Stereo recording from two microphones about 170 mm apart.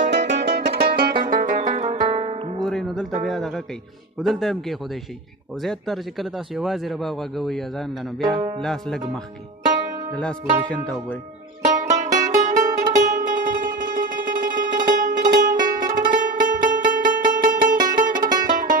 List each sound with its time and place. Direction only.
0.1 s music: 90° right; by 2.6 s 35° right (ahead or behind)
2.6 s a sound: centre (ahead or behind)
4.2 s speech: centre (ahead or behind)
11.6 s music: 45° right (ahead or behind)